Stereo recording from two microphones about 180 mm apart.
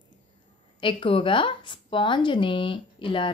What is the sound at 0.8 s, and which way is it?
Speech, 30° left (ahead or behind).